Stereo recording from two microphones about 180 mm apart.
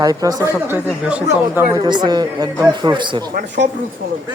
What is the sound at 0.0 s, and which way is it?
Speech, 20° right (ahead or behind).